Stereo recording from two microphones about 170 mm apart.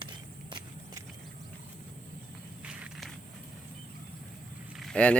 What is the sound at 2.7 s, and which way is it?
Walk, 5° right (ahead or behind).